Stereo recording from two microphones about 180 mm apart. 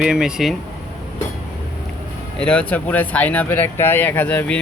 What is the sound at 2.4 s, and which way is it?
Speech, 5° left (ahead or behind).